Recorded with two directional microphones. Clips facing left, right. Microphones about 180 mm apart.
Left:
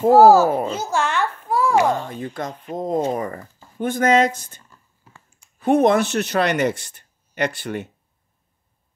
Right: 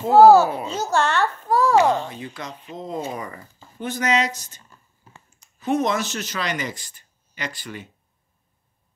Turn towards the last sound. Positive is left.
turn(degrees=60)  # may be behind; listen again after turning